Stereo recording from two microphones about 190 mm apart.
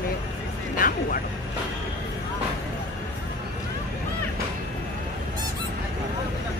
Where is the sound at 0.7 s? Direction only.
45° left (ahead or behind).